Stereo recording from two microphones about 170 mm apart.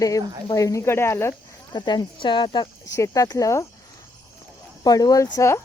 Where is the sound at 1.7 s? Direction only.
25° left (ahead or behind).